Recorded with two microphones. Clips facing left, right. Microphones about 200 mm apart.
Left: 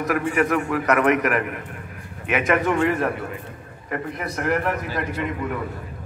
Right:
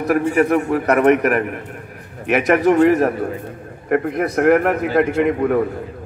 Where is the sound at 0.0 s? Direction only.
35° right (ahead or behind).